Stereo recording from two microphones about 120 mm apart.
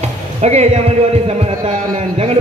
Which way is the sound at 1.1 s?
60° right (ahead or behind).